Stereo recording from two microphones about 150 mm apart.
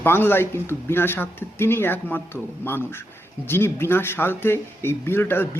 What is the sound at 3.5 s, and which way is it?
Speech, 15° left (ahead or behind).